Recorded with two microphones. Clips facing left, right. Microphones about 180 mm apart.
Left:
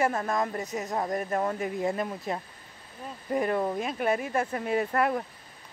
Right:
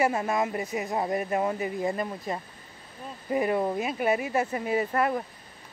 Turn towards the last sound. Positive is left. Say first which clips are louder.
# even
turn(degrees=0)  # may be behind; listen again after turning